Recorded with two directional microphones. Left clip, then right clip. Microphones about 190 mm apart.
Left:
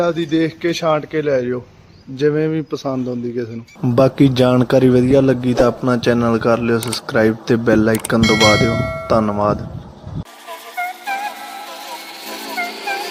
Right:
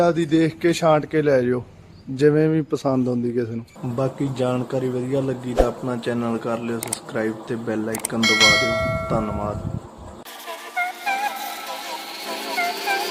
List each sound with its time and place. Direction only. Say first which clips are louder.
0.0 s a man's voice: left 1 dB; 5° right (ahead or behind)
3.9 s a man's voice: left 11 dB; 45° left (ahead or behind)
8.2 s a man's voice: left 1 dB; centre (ahead or behind)
9.0 s a man's voice: left 9 dB; 35° left (ahead or behind)
12.5 s music: even; centre (ahead or behind)